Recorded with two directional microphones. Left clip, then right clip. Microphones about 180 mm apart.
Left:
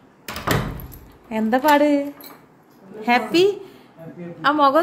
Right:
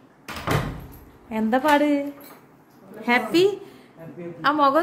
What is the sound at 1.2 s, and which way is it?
A woman's voice, 15° left (ahead or behind).